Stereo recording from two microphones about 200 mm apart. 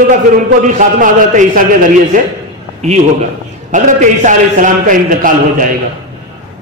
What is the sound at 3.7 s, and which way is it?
A man's voice, 40° right (ahead or behind).